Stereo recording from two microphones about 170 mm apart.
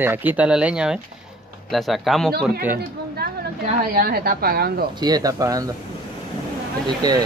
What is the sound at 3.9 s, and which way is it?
Speech, 60° right (ahead or behind).